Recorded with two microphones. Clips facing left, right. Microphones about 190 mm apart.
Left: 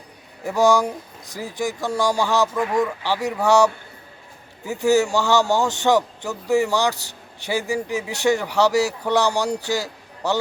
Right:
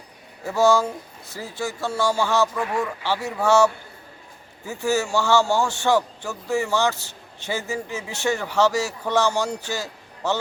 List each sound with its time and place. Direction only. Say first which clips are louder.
0.4 s a man's voice: left 1 dB; 15° left (ahead or behind)